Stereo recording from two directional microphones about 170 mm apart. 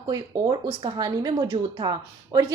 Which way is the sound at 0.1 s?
25° right (ahead or behind).